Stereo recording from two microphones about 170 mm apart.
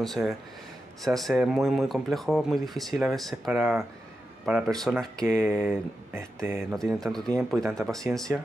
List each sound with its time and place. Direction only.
0.0 s speech: centre (ahead or behind)
5.1 s speech: 20° right (ahead or behind)
6.7 s speech: centre (ahead or behind)